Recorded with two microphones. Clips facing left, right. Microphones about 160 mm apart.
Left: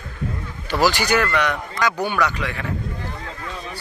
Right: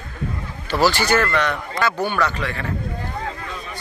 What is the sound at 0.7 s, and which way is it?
Speech, 15° left (ahead or behind).